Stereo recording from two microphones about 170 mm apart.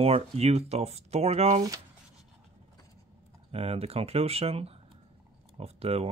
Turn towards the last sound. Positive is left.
turn(degrees=-35)  # may be behind; listen again after turning